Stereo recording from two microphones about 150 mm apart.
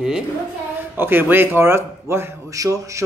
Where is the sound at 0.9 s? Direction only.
15° right (ahead or behind).